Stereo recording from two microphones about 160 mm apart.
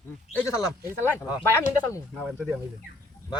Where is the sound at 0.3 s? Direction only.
20° left (ahead or behind).